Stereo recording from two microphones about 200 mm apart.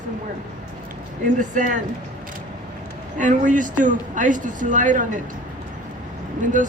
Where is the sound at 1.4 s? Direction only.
40° right (ahead or behind).